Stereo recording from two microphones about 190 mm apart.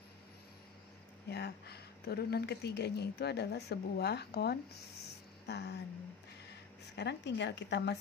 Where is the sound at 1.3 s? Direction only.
60° left (ahead or behind).